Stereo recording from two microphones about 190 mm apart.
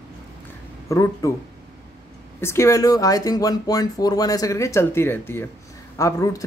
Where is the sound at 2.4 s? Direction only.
15° left (ahead or behind).